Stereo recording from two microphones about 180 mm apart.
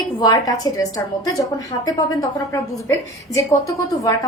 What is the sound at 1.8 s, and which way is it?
A woman's voice, 20° left (ahead or behind).